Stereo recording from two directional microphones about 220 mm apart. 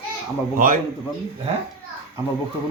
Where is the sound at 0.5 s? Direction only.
40° right (ahead or behind).